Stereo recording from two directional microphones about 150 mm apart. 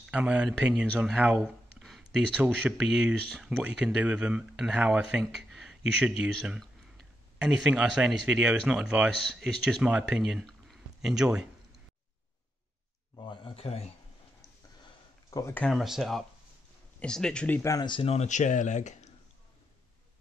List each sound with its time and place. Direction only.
0.1 s speech: 10° right (ahead or behind)
13.1 s speech: 35° left (ahead or behind)
15.2 s speech: 25° left (ahead or behind)
15.5 s speech: 5° left (ahead or behind); by 19.0 s 55° left (ahead or behind)